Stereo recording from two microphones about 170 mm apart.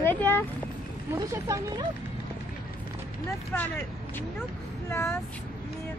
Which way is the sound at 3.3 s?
15° left (ahead or behind).